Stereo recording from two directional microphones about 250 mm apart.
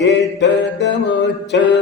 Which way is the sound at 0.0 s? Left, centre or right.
Left.